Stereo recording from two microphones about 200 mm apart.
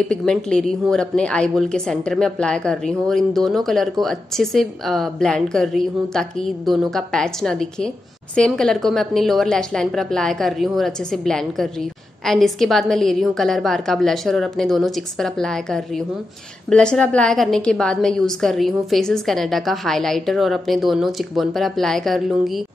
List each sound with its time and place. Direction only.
0.0 s a woman's voice: 5° left (ahead or behind)